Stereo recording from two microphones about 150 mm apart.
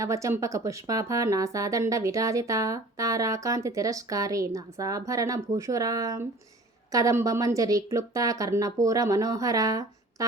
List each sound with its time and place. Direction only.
0.0 s a woman's voice: 20° right (ahead or behind)